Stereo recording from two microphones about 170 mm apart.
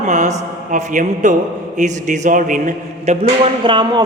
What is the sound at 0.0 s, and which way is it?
A man's voice, 45° right (ahead or behind).